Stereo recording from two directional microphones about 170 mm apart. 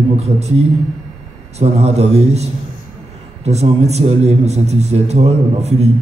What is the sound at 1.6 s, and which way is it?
A man's voice, 40° right (ahead or behind).